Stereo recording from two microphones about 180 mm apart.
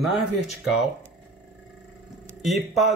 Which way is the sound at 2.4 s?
Centre (ahead or behind).